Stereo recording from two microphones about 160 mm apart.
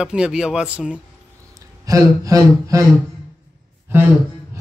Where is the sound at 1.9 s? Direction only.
20° right (ahead or behind).